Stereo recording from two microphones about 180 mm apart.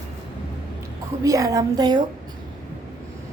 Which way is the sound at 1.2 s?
20° right (ahead or behind).